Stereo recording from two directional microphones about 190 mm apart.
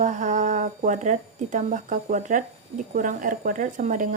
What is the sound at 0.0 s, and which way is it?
A woman's voice, 40° right (ahead or behind).